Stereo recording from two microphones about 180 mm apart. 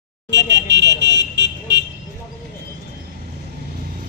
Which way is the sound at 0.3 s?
70° right (ahead or behind).